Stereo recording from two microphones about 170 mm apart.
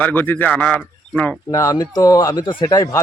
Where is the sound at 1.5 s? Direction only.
20° left (ahead or behind).